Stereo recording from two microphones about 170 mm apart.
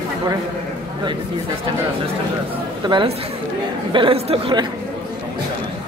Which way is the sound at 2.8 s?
30° right (ahead or behind).